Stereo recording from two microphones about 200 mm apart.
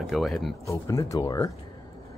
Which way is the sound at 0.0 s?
Centre (ahead or behind).